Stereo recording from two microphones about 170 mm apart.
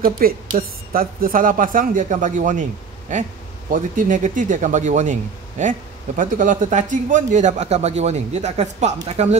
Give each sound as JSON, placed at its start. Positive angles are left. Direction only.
{"t": 0.0, "sound": "a woman's voice", "side_deg": -55}
{"t": 3.7, "sound": "speech", "side_deg": -50}